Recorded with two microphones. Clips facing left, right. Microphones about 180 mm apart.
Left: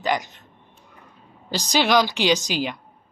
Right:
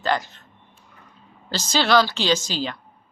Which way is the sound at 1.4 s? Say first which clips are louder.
Left 1 dB; 15° left (ahead or behind).